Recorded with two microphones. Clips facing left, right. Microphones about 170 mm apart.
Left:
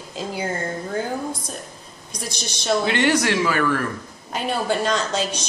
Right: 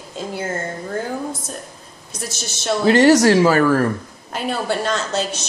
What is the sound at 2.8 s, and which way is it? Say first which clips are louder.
Speech: right 12 dB; 40° right (ahead or behind).